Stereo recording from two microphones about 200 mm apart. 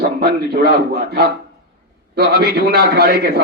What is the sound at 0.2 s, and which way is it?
Speech, 50° right (ahead or behind).